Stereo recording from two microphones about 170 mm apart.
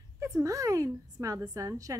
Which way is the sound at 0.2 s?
20° right (ahead or behind).